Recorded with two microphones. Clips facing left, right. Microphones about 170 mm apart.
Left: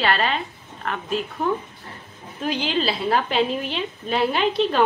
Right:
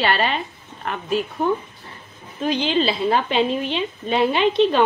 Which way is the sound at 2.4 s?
5° left (ahead or behind).